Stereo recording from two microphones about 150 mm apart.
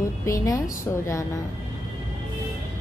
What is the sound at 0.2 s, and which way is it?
Speech, 20° left (ahead or behind).